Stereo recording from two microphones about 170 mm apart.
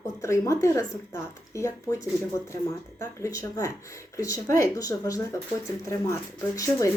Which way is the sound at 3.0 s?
20° left (ahead or behind).